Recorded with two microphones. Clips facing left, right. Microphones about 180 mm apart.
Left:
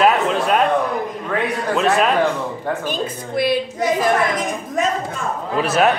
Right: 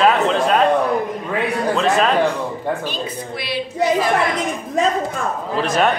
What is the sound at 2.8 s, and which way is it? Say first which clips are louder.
Speech: left 2 dB; 50° left (ahead or behind).